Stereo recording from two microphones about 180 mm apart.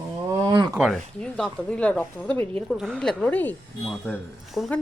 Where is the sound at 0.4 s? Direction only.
20° right (ahead or behind).